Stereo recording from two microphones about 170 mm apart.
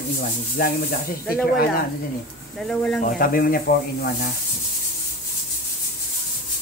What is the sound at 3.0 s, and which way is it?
Speech, 55° left (ahead or behind).